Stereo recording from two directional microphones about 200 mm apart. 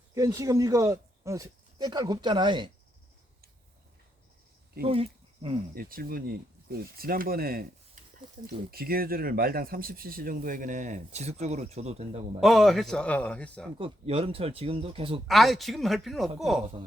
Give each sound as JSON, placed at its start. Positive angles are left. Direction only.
{"t": 0.1, "sound": "speech", "side_deg": -15}
{"t": 4.9, "sound": "speech", "side_deg": -25}
{"t": 5.7, "sound": "speech", "side_deg": -45}
{"t": 12.4, "sound": "a man's voice", "side_deg": 0}
{"t": 13.7, "sound": "speech", "side_deg": -30}
{"t": 15.3, "sound": "a man's voice", "side_deg": 0}